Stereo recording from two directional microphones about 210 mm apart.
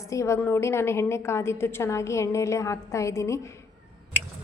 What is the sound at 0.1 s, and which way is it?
A woman's voice, 15° left (ahead or behind).